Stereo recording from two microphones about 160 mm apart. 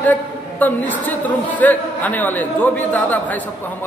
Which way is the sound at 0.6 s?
10° left (ahead or behind).